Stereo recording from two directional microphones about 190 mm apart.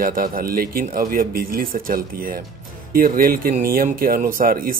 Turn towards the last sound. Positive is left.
turn(degrees=-45)  # may be behind; listen again after turning